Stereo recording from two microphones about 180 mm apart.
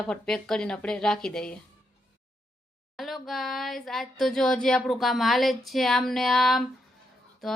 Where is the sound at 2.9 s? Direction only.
Centre (ahead or behind).